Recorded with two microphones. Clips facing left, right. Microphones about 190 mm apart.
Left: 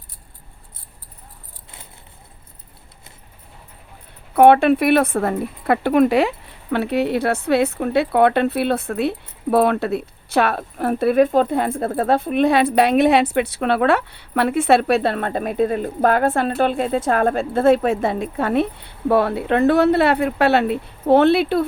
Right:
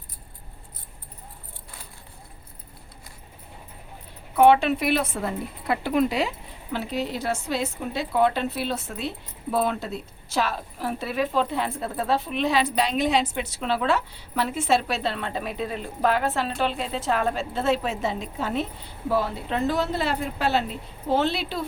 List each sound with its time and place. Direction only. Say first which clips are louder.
4.4 s a woman's voice: left 6 dB; 55° left (ahead or behind)